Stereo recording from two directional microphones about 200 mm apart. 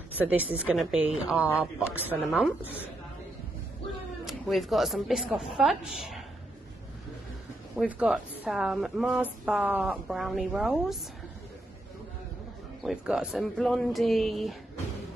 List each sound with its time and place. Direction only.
0.2 s speech: 10° right (ahead or behind)
4.2 s speech: centre (ahead or behind)
7.7 s a woman's voice: 5° right (ahead or behind)
12.8 s a woman's voice: 5° right (ahead or behind)